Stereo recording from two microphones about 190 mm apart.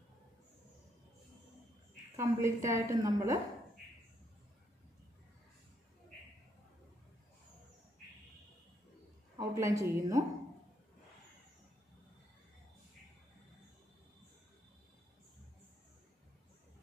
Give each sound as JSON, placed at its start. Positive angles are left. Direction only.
{"t": 2.1, "sound": "a woman's voice", "side_deg": -15}
{"t": 9.4, "sound": "a woman's voice", "side_deg": -15}